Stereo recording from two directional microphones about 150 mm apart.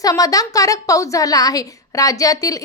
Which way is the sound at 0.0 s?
25° left (ahead or behind).